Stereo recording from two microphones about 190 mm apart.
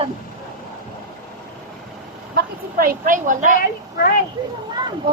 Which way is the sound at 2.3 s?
50° right (ahead or behind).